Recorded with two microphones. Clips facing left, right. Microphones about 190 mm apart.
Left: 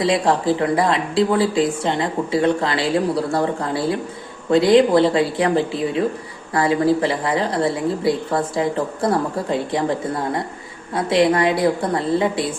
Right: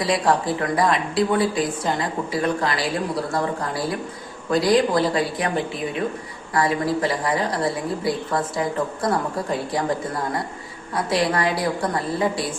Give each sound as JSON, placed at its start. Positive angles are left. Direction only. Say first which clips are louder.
{"t": 0.0, "sound": "speech", "louder": "left 3 dB", "side_deg": 25}